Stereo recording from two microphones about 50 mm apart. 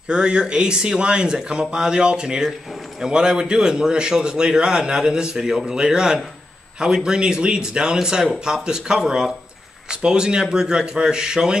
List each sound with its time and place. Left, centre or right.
0.1 s a man's voice: centre